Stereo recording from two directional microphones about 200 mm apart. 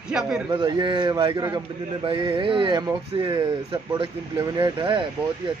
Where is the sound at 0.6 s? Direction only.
20° right (ahead or behind).